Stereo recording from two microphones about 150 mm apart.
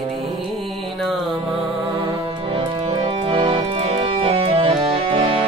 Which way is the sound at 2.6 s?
35° right (ahead or behind).